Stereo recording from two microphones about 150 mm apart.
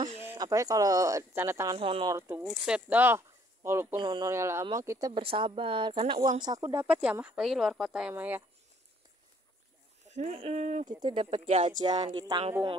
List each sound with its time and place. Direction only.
0.1 s a sound: 45° right (ahead or behind)
0.4 s speech: 25° right (ahead or behind)
1.8 s speech: 40° right (ahead or behind)
2.0 s speech: 20° right (ahead or behind)
2.4 s speech: 5° right (ahead or behind)
4.0 s speech: 30° right (ahead or behind)
4.3 s speech: 20° right (ahead or behind)
5.2 s speech: 40° right (ahead or behind); by 8.5 s 15° right (ahead or behind)
10.0 s speech: 50° right (ahead or behind)
10.9 s speech: 30° right (ahead or behind)
11.2 s speech: 50° right (ahead or behind)
12.1 s speech: 35° right (ahead or behind)